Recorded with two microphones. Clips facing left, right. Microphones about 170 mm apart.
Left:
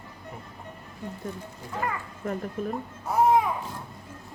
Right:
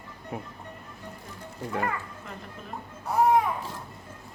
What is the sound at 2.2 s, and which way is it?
Speech, 50° left (ahead or behind).